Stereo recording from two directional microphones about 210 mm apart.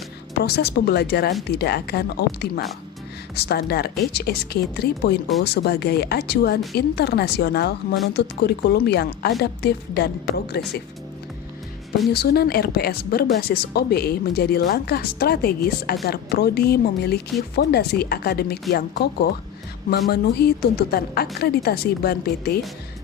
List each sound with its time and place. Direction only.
0.3 s a woman's voice: 50° left (ahead or behind)
12.1 s a woman's voice: 50° left (ahead or behind)